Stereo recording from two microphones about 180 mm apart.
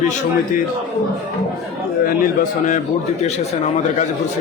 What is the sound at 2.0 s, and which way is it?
Speech, 50° left (ahead or behind).